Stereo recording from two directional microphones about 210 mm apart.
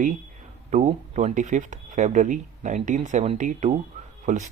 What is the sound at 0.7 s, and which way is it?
Speech, 35° right (ahead or behind).